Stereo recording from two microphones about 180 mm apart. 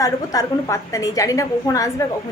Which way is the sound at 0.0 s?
20° left (ahead or behind).